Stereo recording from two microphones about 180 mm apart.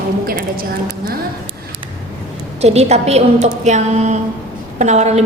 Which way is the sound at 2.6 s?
35° right (ahead or behind).